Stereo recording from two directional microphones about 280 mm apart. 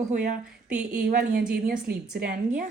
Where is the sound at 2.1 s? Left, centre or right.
Right.